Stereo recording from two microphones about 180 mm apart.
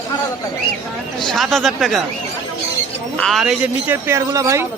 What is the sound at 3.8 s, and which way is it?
Speech, 15° right (ahead or behind).